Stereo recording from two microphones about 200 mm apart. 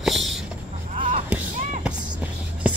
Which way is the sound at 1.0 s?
40° right (ahead or behind).